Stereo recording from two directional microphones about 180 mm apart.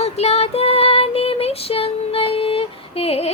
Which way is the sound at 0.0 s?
35° left (ahead or behind).